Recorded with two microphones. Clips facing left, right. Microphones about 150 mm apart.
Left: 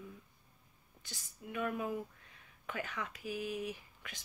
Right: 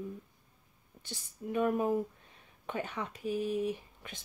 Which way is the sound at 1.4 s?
35° right (ahead or behind).